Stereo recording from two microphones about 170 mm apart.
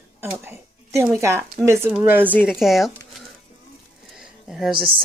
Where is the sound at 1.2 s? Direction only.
15° right (ahead or behind); by 3.2 s centre (ahead or behind).